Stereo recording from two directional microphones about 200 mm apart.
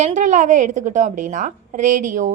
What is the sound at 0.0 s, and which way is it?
A woman's voice, 35° right (ahead or behind).